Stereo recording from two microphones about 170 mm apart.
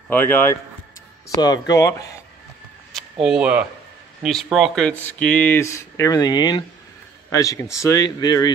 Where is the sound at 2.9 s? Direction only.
Centre (ahead or behind); by 8.5 s 25° left (ahead or behind).